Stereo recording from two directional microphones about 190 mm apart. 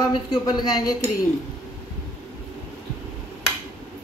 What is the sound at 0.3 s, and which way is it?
Speech, 20° left (ahead or behind).